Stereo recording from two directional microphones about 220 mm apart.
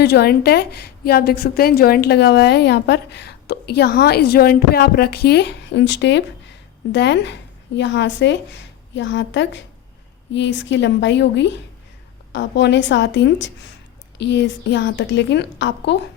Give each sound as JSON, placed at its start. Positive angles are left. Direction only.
{"t": 0.0, "sound": "a woman's voice", "side_deg": 45}